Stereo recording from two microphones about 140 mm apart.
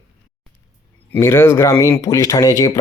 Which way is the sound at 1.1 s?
20° left (ahead or behind).